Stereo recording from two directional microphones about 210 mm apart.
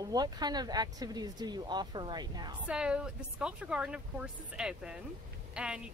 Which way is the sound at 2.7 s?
5° right (ahead or behind).